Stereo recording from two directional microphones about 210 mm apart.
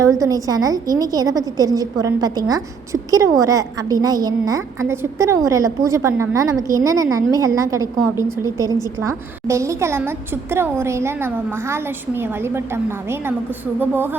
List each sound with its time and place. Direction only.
0.0 s a woman's voice: 15° right (ahead or behind)